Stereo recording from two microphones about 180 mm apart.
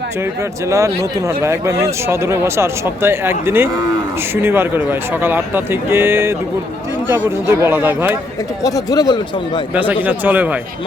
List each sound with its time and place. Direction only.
0.7 s speech: 15° right (ahead or behind)
8.6 s speech: 20° left (ahead or behind)
9.7 s speech: 10° right (ahead or behind)